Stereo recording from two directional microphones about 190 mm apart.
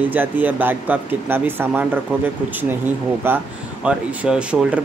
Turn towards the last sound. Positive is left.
turn(degrees=-5)  # may be behind; listen again after turning